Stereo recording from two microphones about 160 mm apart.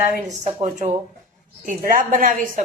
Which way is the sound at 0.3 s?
45° right (ahead or behind).